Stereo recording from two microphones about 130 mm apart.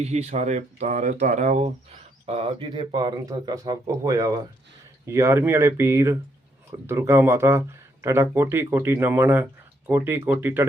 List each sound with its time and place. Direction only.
0.0 s speech: 60° right (ahead or behind)
2.2 s speech: 50° right (ahead or behind); by 10.7 s 15° right (ahead or behind)